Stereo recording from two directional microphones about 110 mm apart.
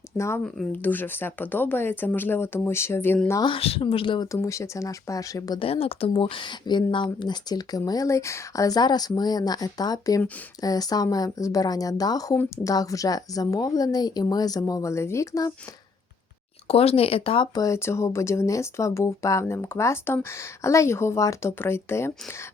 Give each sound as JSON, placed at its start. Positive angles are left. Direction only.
{"t": 0.2, "sound": "speech", "side_deg": 25}
{"t": 0.4, "sound": "speech", "side_deg": 0}
{"t": 0.7, "sound": "speech", "side_deg": 15}
{"t": 3.4, "sound": "speech", "side_deg": 55}
{"t": 4.3, "sound": "speech", "side_deg": 30}
{"t": 5.5, "sound": "speech", "side_deg": 60}
{"t": 16.6, "sound": "speech", "side_deg": 60}
{"t": 17.5, "sound": "speech", "side_deg": 30}